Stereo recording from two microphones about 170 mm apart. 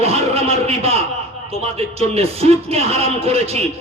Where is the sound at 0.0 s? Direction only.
35° right (ahead or behind).